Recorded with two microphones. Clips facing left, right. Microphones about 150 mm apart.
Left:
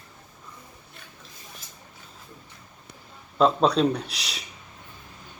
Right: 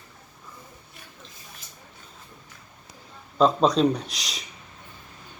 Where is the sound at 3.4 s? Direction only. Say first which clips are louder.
Right 1 dB; 5° left (ahead or behind).